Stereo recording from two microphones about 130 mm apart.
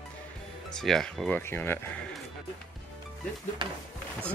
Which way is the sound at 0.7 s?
5° left (ahead or behind).